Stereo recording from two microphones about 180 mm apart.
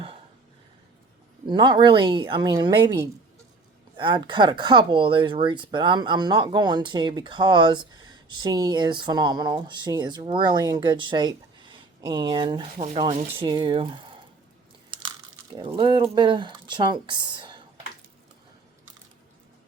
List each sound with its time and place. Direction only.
1.5 s speech: 25° right (ahead or behind)
15.5 s speech: 25° right (ahead or behind)